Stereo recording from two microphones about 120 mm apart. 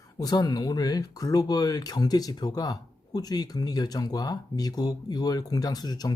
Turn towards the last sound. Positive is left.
turn(degrees=35)  # may be behind; listen again after turning